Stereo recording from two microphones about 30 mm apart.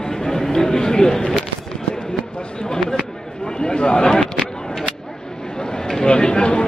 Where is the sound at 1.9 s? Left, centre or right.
Left.